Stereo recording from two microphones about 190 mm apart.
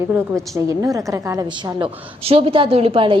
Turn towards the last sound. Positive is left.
turn(degrees=-25)  # may be behind; listen again after turning